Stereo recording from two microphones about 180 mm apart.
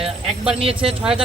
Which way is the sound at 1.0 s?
5° right (ahead or behind).